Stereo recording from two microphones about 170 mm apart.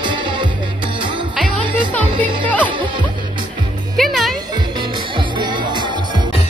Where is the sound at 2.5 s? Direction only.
10° left (ahead or behind).